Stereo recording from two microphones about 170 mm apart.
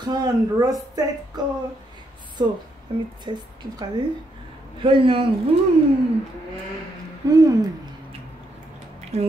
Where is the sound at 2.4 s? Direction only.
25° right (ahead or behind).